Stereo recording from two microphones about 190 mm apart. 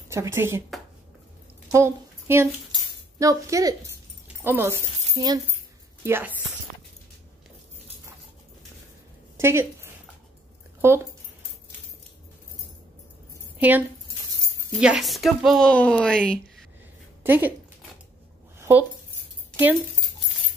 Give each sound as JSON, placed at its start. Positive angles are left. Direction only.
{"t": 0.1, "sound": "speech", "side_deg": -15}
{"t": 1.7, "sound": "speech", "side_deg": -15}
{"t": 9.4, "sound": "a woman's voice", "side_deg": -15}
{"t": 13.6, "sound": "a woman's voice", "side_deg": -10}
{"t": 17.2, "sound": "speech", "side_deg": -10}
{"t": 18.6, "sound": "a sound", "side_deg": -10}